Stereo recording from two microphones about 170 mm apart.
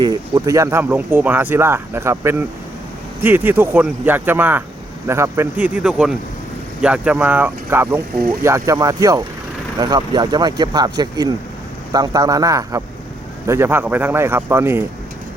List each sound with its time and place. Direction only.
0.0 s speech: 20° right (ahead or behind)